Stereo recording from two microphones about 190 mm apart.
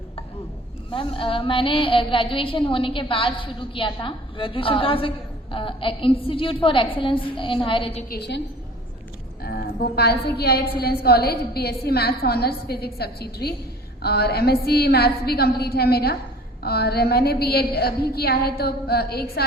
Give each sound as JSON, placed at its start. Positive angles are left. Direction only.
{"t": 0.9, "sound": "a sound", "side_deg": 25}
{"t": 8.1, "sound": "a woman's voice", "side_deg": 60}
{"t": 9.4, "sound": "a woman's voice", "side_deg": 55}